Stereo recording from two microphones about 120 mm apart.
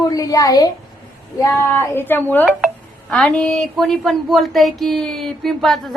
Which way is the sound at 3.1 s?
5° left (ahead or behind).